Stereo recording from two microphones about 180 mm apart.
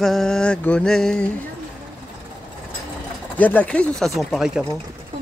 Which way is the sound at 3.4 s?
10° left (ahead or behind).